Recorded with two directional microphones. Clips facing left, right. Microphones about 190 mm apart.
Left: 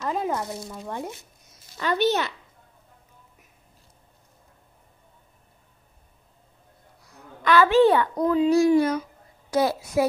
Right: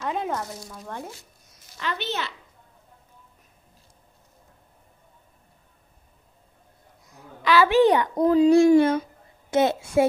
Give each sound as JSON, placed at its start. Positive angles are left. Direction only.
{"t": 0.0, "sound": "a sound", "side_deg": 0}
{"t": 0.4, "sound": "speech", "side_deg": 25}
{"t": 1.8, "sound": "a woman's voice", "side_deg": 45}
{"t": 7.6, "sound": "a child's voice", "side_deg": -15}